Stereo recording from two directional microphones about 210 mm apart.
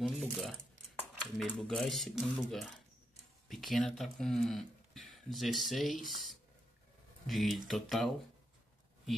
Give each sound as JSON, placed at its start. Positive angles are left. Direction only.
{"t": 0.0, "sound": "speech", "side_deg": -5}